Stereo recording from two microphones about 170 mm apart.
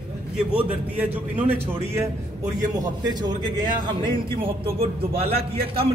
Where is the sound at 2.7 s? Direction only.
25° right (ahead or behind).